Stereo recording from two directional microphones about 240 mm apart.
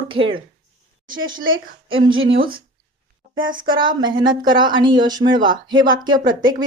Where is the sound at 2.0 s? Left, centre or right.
Centre.